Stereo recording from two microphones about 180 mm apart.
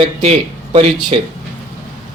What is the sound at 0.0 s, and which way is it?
Speech, 35° right (ahead or behind).